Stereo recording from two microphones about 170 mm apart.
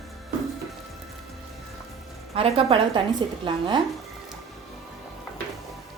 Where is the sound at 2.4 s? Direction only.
35° right (ahead or behind).